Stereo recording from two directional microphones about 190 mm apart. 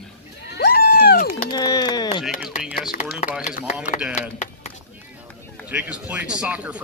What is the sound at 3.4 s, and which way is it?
Speech, 40° left (ahead or behind).